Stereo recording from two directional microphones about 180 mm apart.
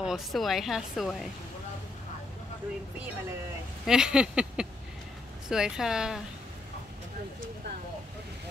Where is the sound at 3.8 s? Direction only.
5° right (ahead or behind).